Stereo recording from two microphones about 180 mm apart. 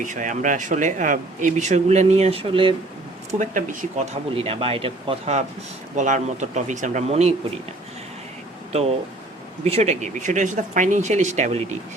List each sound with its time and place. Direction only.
0.0 s speech: 45° right (ahead or behind); by 2.7 s 30° right (ahead or behind)
3.3 s speech: 45° right (ahead or behind)
9.6 s speech: 35° right (ahead or behind)